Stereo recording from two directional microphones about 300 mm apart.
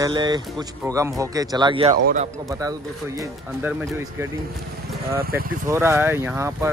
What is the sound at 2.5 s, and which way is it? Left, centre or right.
Speech, centre.